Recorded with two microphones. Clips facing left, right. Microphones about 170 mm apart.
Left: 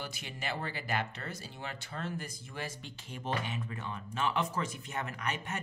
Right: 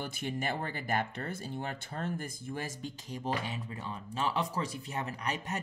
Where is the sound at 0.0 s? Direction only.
50° right (ahead or behind).